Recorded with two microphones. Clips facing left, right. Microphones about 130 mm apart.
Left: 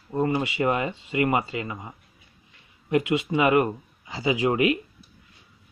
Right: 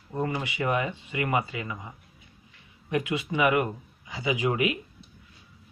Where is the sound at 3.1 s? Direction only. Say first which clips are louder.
Left 2 dB; 25° left (ahead or behind).